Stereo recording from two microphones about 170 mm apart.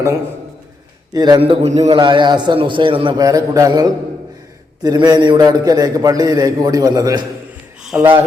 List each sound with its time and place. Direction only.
1.1 s a man's voice: 25° right (ahead or behind)
2.0 s a man's voice: 30° right (ahead or behind)
7.9 s speech: 10° right (ahead or behind)